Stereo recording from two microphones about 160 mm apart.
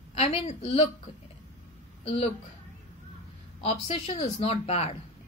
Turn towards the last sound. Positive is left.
turn(degrees=40)  # may be behind; listen again after turning